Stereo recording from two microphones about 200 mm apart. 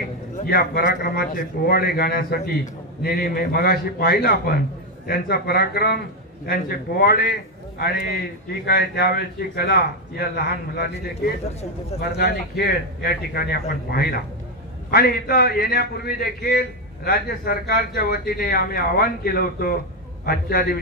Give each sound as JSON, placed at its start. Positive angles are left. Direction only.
{"t": 0.4, "sound": "a man's voice", "side_deg": 50}
{"t": 12.0, "sound": "a man's voice", "side_deg": 55}